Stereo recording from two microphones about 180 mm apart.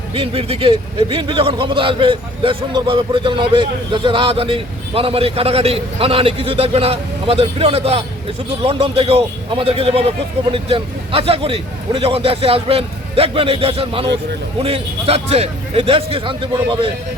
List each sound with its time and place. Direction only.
0.1 s a man's voice: 30° right (ahead or behind)